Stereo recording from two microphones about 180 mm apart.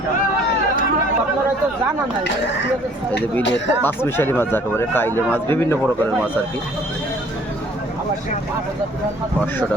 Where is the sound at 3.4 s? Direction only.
85° left.